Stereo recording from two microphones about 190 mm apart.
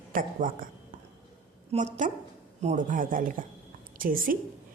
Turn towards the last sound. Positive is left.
turn(degrees=-50)  # may be behind; listen again after turning